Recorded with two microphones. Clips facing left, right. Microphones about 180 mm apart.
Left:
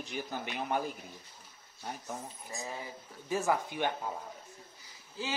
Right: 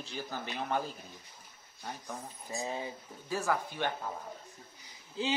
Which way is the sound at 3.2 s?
20° left (ahead or behind).